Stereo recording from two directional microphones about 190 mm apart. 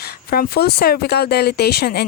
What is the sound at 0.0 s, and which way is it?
Speech, 55° left (ahead or behind).